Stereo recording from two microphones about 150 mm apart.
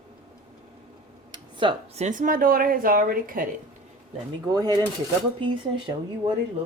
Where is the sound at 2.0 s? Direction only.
60° right (ahead or behind).